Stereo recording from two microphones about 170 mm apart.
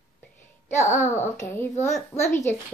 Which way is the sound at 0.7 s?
45° left (ahead or behind).